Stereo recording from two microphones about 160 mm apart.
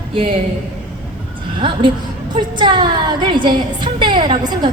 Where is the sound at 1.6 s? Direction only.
30° right (ahead or behind).